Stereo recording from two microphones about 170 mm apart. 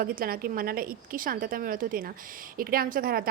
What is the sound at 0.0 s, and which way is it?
A woman's voice, 60° right (ahead or behind).